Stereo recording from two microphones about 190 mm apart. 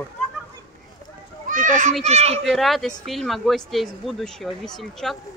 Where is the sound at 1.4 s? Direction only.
45° right (ahead or behind).